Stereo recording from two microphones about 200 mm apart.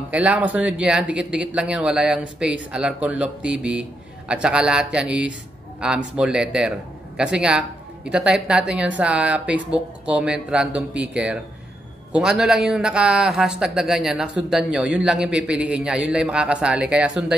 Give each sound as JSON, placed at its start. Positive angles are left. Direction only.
{"t": 0.1, "sound": "a man's voice", "side_deg": -5}